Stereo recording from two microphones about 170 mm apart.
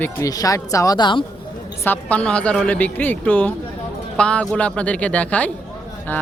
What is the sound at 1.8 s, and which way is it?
Speech, 10° left (ahead or behind).